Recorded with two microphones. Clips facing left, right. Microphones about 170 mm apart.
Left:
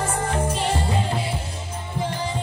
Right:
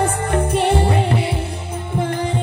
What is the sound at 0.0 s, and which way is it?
Music, 60° right (ahead or behind).